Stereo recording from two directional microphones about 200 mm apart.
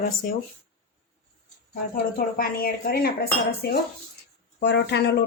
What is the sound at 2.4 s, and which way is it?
Speech, 45° left (ahead or behind).